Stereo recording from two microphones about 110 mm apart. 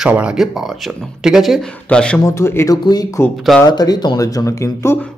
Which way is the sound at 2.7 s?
35° left (ahead or behind).